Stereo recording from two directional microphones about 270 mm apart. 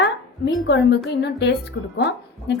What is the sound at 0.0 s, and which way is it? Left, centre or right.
A woman's voice, left.